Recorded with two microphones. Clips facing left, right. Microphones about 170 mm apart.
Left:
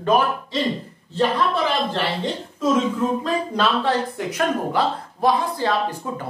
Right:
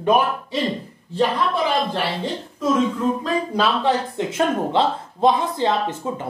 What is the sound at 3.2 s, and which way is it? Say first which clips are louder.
Speech: right 1 dB; 10° right (ahead or behind).